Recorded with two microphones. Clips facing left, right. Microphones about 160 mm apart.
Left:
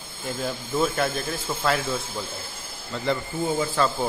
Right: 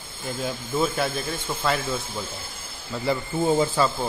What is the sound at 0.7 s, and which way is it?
Speech, 5° right (ahead or behind).